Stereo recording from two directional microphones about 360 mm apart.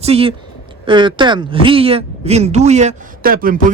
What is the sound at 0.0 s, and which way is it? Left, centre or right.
Speech, centre.